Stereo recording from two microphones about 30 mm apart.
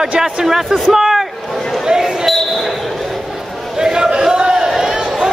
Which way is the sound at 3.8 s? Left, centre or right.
Right.